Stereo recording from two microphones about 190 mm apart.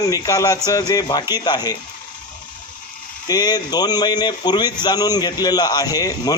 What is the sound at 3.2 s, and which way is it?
A man's voice, 20° left (ahead or behind).